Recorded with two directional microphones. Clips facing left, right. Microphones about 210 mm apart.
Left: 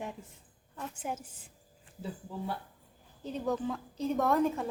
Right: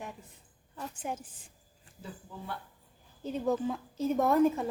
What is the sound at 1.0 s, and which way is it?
Speech, 5° left (ahead or behind).